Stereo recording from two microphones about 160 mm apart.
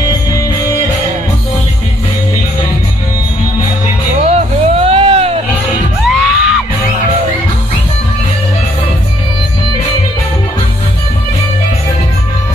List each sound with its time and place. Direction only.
4.2 s music: 40° right (ahead or behind)
6.0 s music: centre (ahead or behind)